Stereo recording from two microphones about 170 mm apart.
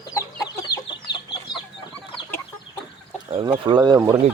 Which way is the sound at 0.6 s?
20° left (ahead or behind).